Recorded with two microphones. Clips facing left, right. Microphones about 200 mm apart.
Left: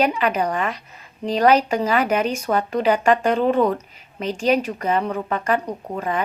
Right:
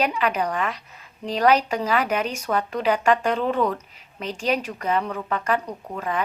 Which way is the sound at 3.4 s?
25° left (ahead or behind).